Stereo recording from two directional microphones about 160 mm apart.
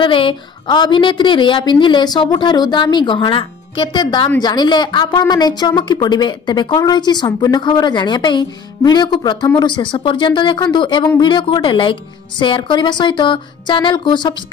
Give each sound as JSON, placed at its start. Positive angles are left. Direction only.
{"t": 0.0, "sound": "speech", "side_deg": 30}